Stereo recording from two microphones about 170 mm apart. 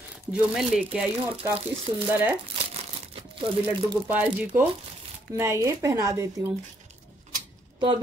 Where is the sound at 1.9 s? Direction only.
30° right (ahead or behind).